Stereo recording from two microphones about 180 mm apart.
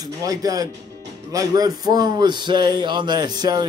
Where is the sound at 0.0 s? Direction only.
20° right (ahead or behind).